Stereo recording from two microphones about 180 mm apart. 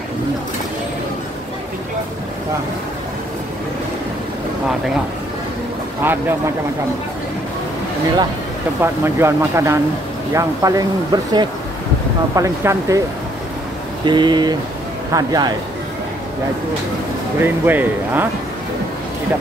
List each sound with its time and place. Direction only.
6.0 s speech: 10° right (ahead or behind)
8.8 s speech: 15° right (ahead or behind)
14.0 s speech: 25° right (ahead or behind)
17.4 s speech: 10° right (ahead or behind)